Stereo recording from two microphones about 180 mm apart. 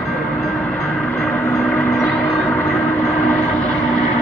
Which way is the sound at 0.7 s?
10° left (ahead or behind).